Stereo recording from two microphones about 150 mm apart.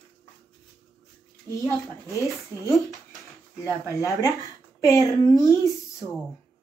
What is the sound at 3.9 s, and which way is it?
A woman's voice, 20° left (ahead or behind).